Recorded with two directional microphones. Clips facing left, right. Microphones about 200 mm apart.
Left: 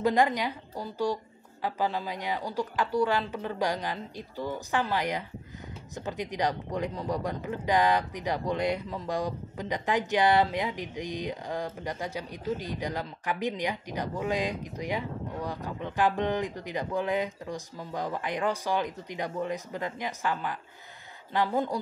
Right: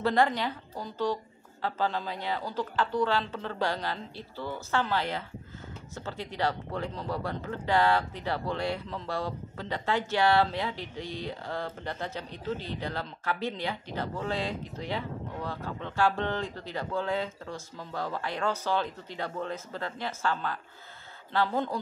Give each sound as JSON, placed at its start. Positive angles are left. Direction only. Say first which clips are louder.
{"t": 0.0, "sound": "speech", "louder": "left 1 dB", "side_deg": 15}